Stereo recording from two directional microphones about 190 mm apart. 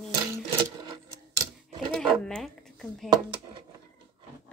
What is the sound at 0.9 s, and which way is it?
Keys jangling, 25° right (ahead or behind).